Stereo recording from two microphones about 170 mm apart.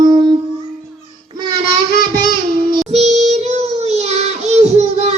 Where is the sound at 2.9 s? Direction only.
40° right (ahead or behind).